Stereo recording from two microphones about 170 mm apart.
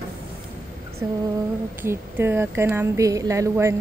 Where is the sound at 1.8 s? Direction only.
15° right (ahead or behind).